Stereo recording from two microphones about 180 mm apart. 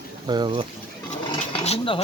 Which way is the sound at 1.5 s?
30° left (ahead or behind).